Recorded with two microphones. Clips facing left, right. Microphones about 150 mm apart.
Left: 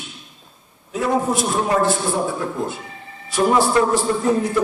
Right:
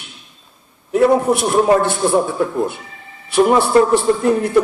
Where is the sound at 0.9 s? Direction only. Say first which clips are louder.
Right 7 dB; 65° right (ahead or behind).